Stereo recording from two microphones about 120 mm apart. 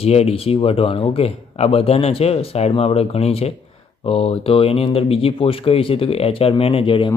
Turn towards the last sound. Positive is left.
turn(degrees=50)  # may be behind; listen again after turning